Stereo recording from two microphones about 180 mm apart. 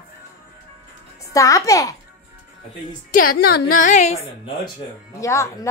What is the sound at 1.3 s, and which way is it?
Speech, 20° left (ahead or behind).